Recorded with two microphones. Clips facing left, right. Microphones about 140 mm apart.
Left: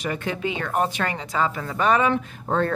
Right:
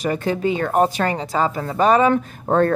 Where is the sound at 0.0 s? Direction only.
35° right (ahead or behind).